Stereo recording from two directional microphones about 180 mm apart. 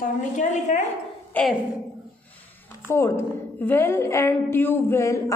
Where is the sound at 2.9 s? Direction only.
15° left (ahead or behind).